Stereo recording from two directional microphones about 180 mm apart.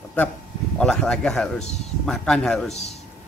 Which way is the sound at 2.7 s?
35° left (ahead or behind).